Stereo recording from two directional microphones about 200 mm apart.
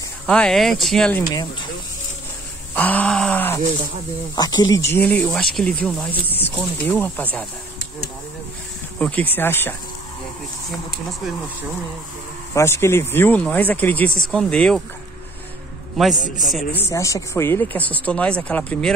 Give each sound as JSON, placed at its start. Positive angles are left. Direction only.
{"t": 0.3, "sound": "speech", "side_deg": 5}
{"t": 2.7, "sound": "speech", "side_deg": 10}
{"t": 4.9, "sound": "speech", "side_deg": 5}
{"t": 8.9, "sound": "speech", "side_deg": 5}
{"t": 12.5, "sound": "speech", "side_deg": 15}
{"t": 16.2, "sound": "a man's voice", "side_deg": 40}
{"t": 16.7, "sound": "speech", "side_deg": 15}